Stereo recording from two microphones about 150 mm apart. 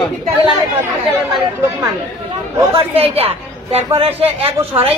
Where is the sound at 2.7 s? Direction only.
40° right (ahead or behind).